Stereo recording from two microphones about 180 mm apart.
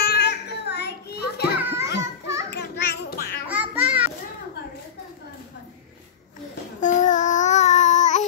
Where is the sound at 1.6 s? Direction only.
10° right (ahead or behind).